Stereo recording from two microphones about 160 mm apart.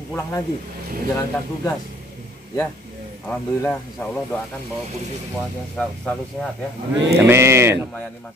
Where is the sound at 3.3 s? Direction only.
10° left (ahead or behind).